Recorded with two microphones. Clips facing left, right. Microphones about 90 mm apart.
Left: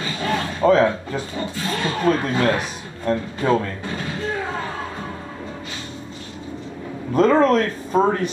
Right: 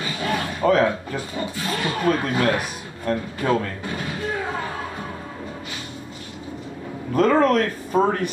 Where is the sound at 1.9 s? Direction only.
25° left (ahead or behind).